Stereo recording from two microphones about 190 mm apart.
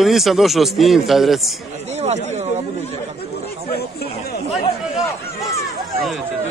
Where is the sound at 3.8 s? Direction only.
55° left (ahead or behind).